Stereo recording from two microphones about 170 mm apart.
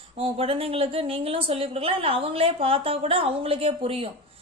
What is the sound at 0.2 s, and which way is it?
A woman's voice, 35° right (ahead or behind).